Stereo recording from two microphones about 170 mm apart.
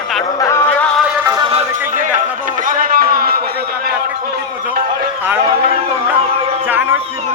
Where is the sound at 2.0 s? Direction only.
50° right (ahead or behind).